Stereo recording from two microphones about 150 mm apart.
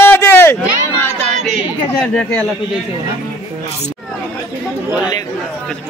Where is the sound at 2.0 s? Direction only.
5° left (ahead or behind).